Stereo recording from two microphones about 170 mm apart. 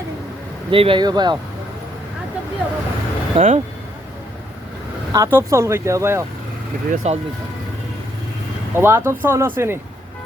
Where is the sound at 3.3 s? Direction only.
35° right (ahead or behind).